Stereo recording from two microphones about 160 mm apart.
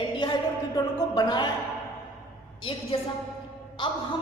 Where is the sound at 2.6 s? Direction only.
35° left (ahead or behind).